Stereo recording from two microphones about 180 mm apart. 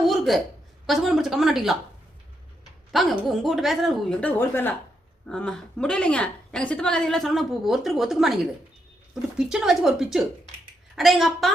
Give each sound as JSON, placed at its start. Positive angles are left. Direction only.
{"t": 0.0, "sound": "a sound", "side_deg": 0}
{"t": 0.9, "sound": "a woman's voice", "side_deg": 0}
{"t": 2.9, "sound": "a woman's voice", "side_deg": 0}